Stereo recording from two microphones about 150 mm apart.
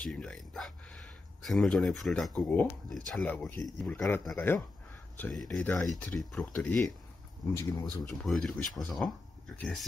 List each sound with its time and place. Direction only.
0.0 s speech: 5° left (ahead or behind)
7.5 s speech: 25° left (ahead or behind)
8.0 s speech: 5° left (ahead or behind)